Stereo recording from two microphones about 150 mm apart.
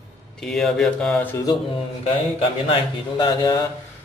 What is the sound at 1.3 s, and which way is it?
Speech, 25° left (ahead or behind).